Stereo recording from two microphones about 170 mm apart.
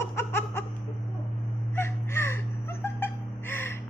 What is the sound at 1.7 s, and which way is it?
Gasp, 15° left (ahead or behind).